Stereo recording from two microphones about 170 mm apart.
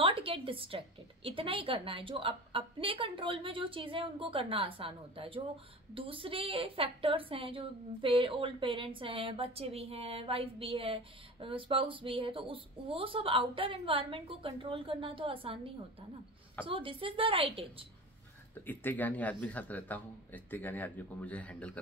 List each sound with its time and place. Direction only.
0.0 s a woman's voice: 30° right (ahead or behind)
18.7 s speech: 10° left (ahead or behind)